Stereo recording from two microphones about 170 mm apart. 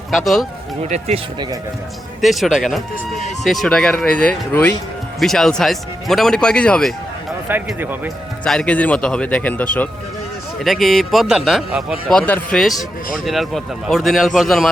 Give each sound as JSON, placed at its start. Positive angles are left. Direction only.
{"t": 0.9, "sound": "speech", "side_deg": -40}
{"t": 2.2, "sound": "a man's voice", "side_deg": 0}
{"t": 7.8, "sound": "speech", "side_deg": -10}
{"t": 8.4, "sound": "a man's voice", "side_deg": 5}